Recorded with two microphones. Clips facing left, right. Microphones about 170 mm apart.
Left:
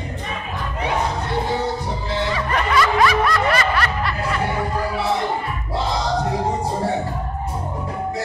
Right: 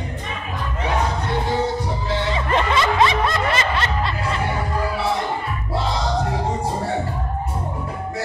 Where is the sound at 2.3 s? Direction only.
25° right (ahead or behind).